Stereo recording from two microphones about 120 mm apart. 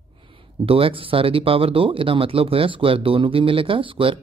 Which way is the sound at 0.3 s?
50° right (ahead or behind).